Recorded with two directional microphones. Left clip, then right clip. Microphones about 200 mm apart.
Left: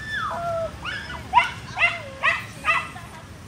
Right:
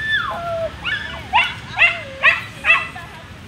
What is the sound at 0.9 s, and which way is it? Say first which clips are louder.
Dog: right 7 dB; 45° right (ahead or behind).